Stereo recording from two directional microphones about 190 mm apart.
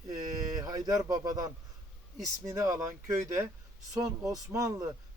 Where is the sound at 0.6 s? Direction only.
20° right (ahead or behind).